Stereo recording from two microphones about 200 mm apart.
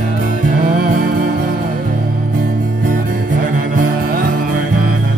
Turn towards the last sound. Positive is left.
turn(degrees=-45)  # may be behind; listen again after turning